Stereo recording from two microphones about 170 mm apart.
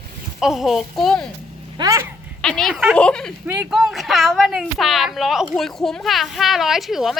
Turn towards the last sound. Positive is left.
turn(degrees=0)  # may be behind; listen again after turning